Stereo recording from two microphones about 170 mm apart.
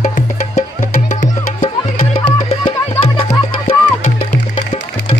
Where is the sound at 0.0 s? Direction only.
45° left (ahead or behind).